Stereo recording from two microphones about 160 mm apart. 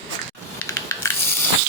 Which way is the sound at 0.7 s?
20° left (ahead or behind).